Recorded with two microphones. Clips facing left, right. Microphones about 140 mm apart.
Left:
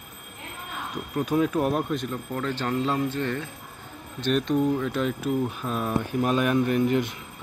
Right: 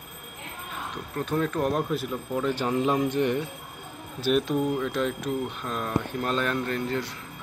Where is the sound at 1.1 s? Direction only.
10° left (ahead or behind); by 3.4 s 15° right (ahead or behind).